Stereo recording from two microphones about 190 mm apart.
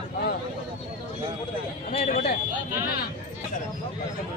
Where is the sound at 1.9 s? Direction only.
35° left (ahead or behind).